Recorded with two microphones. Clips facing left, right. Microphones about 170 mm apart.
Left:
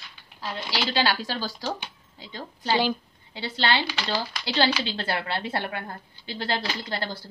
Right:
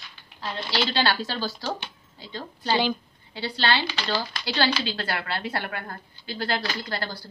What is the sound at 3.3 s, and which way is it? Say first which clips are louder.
A woman's voice: even; 20° left (ahead or behind).